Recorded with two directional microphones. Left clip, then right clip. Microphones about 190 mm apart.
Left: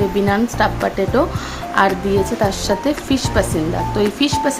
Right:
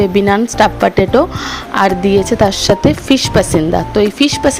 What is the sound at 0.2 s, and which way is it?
Speech, 40° right (ahead or behind).